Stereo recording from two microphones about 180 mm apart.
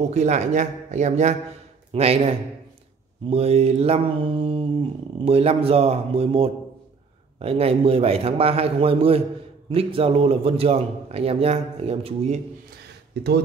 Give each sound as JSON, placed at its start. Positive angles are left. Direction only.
{"t": 0.1, "sound": "a man's voice", "side_deg": -40}
{"t": 13.1, "sound": "speech", "side_deg": -65}